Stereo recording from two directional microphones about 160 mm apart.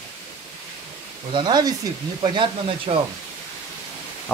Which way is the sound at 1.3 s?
25° right (ahead or behind).